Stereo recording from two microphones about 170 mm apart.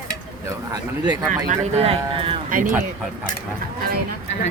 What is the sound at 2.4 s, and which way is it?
Speech, 50° right (ahead or behind).